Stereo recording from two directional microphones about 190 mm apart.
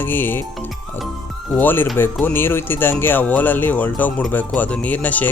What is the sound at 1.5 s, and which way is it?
Speech, 10° left (ahead or behind).